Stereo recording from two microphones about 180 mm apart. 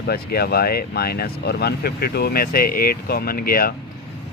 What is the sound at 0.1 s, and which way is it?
Speech, 60° left (ahead or behind).